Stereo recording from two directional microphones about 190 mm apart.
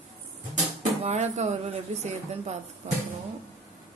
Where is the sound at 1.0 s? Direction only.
35° right (ahead or behind).